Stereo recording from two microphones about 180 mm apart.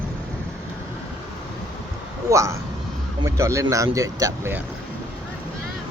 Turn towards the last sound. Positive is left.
turn(degrees=-15)  # may be behind; listen again after turning